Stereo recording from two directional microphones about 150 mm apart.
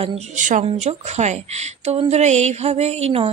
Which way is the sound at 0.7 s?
50° right (ahead or behind).